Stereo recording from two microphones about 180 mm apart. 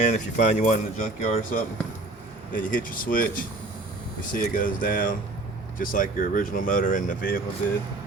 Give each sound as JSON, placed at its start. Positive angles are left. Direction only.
{"t": 0.0, "sound": "speech", "side_deg": 45}